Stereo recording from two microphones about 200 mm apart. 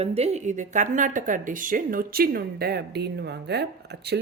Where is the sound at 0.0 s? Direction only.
30° right (ahead or behind).